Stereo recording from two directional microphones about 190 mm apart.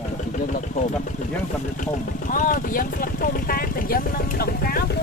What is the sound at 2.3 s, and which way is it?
Speech, 45° left (ahead or behind).